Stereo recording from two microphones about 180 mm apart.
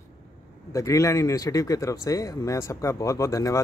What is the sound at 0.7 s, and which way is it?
Speech, 20° left (ahead or behind).